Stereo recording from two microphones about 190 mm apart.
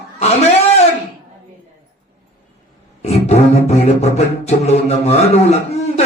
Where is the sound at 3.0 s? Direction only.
35° left (ahead or behind).